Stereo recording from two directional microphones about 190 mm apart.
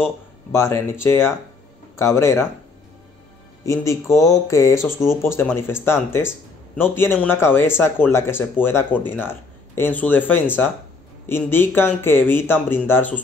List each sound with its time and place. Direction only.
0.0 s speech: 15° left (ahead or behind)
3.6 s speech: 15° left (ahead or behind)
6.8 s speech: 10° left (ahead or behind)